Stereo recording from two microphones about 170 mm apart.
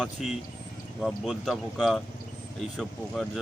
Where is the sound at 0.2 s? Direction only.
Centre (ahead or behind).